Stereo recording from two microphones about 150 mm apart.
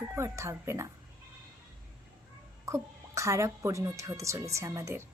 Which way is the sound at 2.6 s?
20° right (ahead or behind).